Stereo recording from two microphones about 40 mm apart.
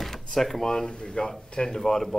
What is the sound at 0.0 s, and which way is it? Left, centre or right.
Speech, centre.